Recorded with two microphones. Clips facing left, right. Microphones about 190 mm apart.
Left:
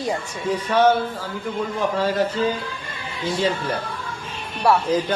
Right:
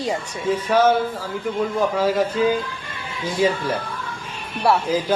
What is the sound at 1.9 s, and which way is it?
Speech, 10° right (ahead or behind).